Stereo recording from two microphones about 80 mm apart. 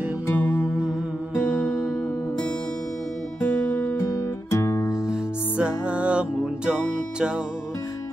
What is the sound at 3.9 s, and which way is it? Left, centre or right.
Guitar, left.